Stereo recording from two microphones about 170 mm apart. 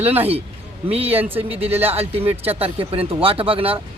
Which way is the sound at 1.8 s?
35° right (ahead or behind).